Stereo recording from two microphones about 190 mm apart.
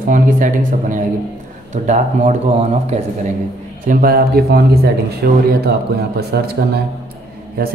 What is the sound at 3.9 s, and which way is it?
Speech, 50° right (ahead or behind).